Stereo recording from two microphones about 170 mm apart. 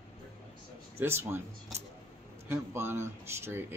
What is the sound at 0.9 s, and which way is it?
Speech, 15° right (ahead or behind).